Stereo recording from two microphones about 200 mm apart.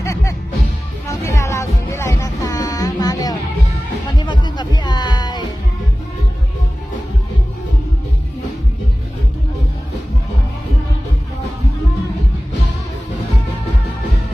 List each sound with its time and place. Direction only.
0.0 s music: 15° left (ahead or behind)